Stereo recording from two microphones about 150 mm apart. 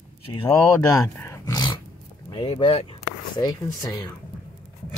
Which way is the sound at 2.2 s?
30° left (ahead or behind).